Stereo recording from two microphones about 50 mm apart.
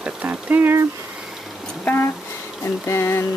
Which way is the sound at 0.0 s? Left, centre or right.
Right.